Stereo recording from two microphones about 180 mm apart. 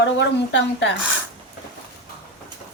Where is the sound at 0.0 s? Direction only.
80° left.